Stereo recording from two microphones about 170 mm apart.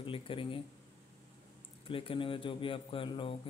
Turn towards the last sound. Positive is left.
turn(degrees=30)  # may be behind; listen again after turning